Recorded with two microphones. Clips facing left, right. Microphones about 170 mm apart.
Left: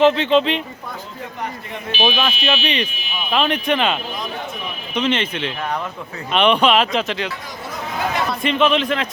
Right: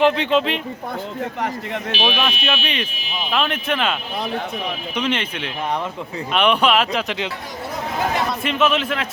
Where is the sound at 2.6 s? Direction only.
5° right (ahead or behind).